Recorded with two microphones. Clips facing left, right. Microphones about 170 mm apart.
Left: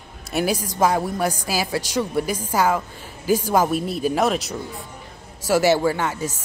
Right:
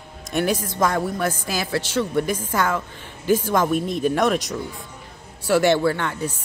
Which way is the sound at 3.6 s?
35° left (ahead or behind).